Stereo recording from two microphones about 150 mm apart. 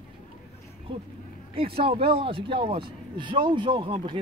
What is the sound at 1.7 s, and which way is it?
Speech, 40° right (ahead or behind).